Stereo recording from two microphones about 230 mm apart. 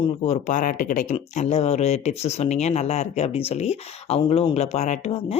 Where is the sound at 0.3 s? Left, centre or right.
Left.